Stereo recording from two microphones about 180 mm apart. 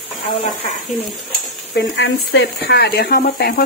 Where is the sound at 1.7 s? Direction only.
85° left; by 3.6 s 60° left (ahead or behind).